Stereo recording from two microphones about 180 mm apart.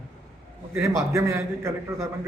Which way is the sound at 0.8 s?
15° right (ahead or behind).